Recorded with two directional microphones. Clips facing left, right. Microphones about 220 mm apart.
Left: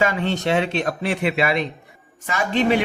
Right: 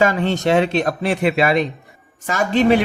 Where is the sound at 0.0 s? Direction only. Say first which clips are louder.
Right 4 dB; 45° right (ahead or behind).